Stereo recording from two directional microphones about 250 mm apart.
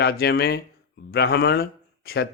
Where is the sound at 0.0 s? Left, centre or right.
Left.